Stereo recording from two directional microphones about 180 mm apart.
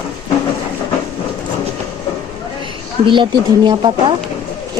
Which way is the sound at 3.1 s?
25° right (ahead or behind).